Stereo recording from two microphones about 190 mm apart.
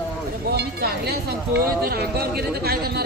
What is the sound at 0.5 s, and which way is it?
Speech, 55° right (ahead or behind).